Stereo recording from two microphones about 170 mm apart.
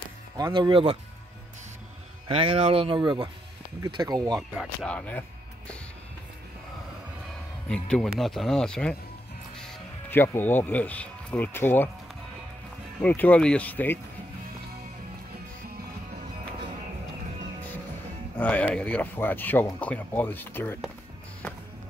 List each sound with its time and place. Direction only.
0.4 s speech: 30° right (ahead or behind)
2.2 s speech: 35° right (ahead or behind)
4.4 s speech: 5° left (ahead or behind)
7.6 s speech: 5° left (ahead or behind)
13.0 s speech: 10° left (ahead or behind)
18.4 s speech: 5° left (ahead or behind)